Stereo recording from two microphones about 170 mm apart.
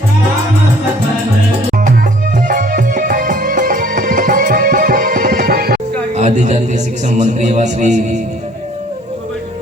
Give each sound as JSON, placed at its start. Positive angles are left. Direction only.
{"t": 2.5, "sound": "music", "side_deg": -55}
{"t": 6.1, "sound": "a man's voice", "side_deg": -45}